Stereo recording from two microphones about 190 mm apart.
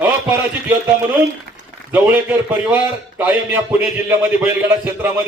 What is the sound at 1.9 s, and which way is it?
A man's voice, 10° right (ahead or behind).